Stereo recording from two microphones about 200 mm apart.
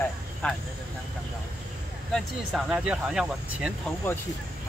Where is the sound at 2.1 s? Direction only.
Centre (ahead or behind).